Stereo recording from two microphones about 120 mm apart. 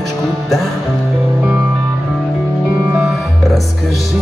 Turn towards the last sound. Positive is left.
turn(degrees=-5)  # may be behind; listen again after turning